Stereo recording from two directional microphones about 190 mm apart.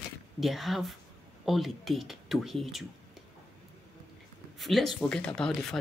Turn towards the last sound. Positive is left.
turn(degrees=5)  # may be behind; listen again after turning